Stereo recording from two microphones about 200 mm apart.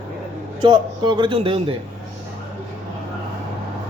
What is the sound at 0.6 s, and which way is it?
Speech, 20° right (ahead or behind).